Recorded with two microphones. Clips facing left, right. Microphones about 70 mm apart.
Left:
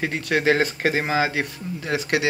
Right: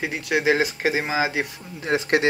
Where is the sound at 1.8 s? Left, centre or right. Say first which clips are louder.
Right 3 dB; right.